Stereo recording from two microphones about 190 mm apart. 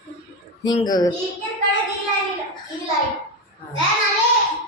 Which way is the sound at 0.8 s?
20° left (ahead or behind).